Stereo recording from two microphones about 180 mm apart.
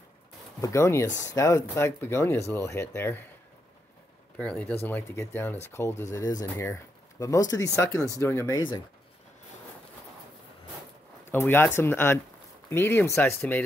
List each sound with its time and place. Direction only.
0.6 s speech: 15° left (ahead or behind)
4.4 s speech: 5° left (ahead or behind)
11.3 s speech: 10° left (ahead or behind)